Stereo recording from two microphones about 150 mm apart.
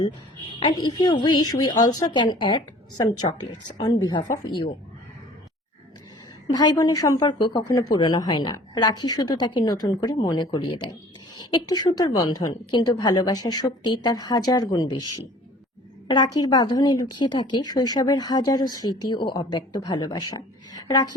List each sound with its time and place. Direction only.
0.6 s speech: 30° left (ahead or behind)
6.5 s speech: 25° left (ahead or behind)